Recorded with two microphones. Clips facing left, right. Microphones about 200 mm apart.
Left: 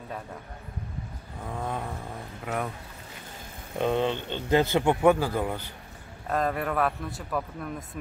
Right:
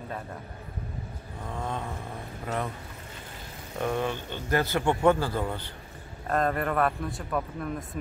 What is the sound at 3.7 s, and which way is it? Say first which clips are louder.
A man's voice: left 3 dB; 20° left (ahead or behind).